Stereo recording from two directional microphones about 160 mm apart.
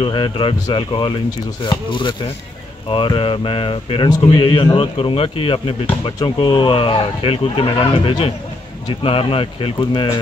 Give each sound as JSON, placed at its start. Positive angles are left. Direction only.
{"t": 0.0, "sound": "speech", "side_deg": 30}